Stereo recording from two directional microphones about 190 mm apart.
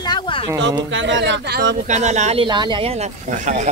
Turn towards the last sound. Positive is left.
turn(degrees=-40)  # may be behind; listen again after turning